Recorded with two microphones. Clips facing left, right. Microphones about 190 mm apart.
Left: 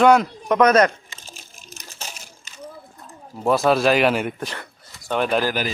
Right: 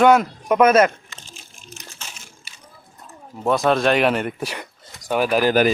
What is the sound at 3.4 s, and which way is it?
Speech, 5° left (ahead or behind).